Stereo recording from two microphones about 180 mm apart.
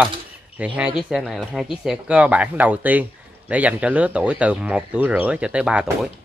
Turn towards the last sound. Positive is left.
turn(degrees=-5)  # may be behind; listen again after turning